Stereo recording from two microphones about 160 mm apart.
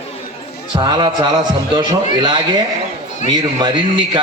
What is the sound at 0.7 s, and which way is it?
A man's voice, 25° right (ahead or behind).